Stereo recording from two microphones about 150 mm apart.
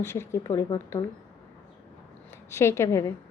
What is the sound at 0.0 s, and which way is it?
A woman's voice, 15° left (ahead or behind).